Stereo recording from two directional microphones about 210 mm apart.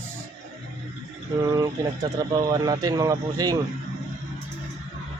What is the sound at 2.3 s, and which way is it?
Speech, 20° right (ahead or behind).